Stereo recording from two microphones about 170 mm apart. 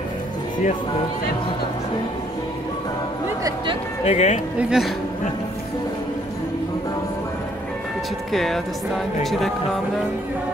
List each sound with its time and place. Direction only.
4.0 s speech: 40° left (ahead or behind)
4.6 s speech: 5° right (ahead or behind)
8.3 s speech: centre (ahead or behind)